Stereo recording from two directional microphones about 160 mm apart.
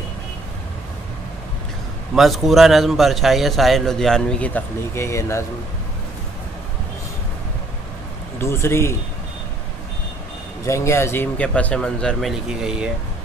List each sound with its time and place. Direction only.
2.1 s a man's voice: centre (ahead or behind); by 5.4 s 15° left (ahead or behind)
8.4 s a man's voice: 15° left (ahead or behind)
10.6 s a man's voice: 20° left (ahead or behind); by 12.9 s 5° right (ahead or behind)